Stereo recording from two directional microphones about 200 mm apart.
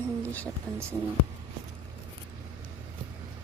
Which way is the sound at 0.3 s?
5° left (ahead or behind).